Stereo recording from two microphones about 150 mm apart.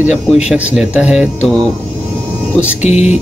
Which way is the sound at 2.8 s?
50° left (ahead or behind).